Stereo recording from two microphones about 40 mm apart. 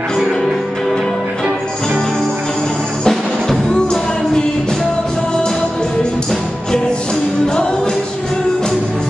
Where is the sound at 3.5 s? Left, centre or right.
Left.